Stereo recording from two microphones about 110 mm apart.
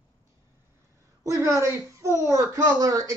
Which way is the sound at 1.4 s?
25° right (ahead or behind).